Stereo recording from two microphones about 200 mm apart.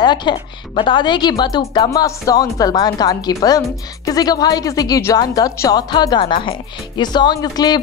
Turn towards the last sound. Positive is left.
turn(degrees=20)  # may be behind; listen again after turning